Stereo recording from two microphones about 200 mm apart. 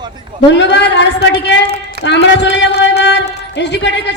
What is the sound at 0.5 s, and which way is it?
A man's voice, 60° left (ahead or behind).